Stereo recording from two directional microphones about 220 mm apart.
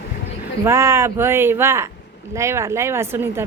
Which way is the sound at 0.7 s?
10° right (ahead or behind).